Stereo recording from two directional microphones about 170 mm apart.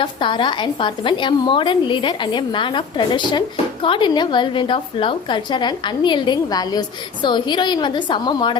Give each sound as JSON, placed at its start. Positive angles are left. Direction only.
{"t": 0.0, "sound": "a woman's voice", "side_deg": 30}